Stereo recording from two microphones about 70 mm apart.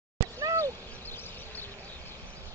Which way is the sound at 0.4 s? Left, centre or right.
Right.